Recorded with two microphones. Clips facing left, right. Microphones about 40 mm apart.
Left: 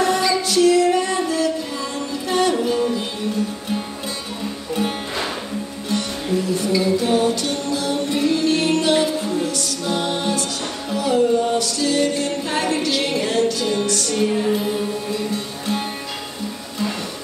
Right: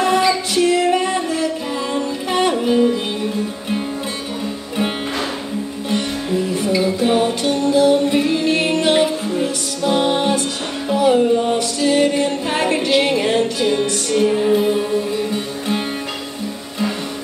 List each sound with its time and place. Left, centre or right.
0.0 s music: right
6.5 s music: right